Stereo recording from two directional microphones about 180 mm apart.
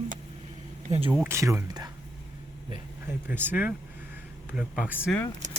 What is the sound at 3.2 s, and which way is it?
Speech, 10° right (ahead or behind).